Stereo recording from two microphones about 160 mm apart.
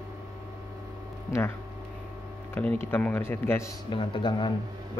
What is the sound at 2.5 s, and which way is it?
Speech, 10° left (ahead or behind).